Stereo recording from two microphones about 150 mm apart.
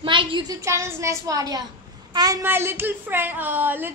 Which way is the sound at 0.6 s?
20° right (ahead or behind).